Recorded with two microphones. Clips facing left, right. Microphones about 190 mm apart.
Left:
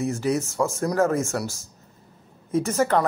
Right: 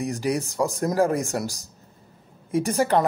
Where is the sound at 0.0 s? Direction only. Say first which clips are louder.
Left 1 dB; 15° right (ahead or behind).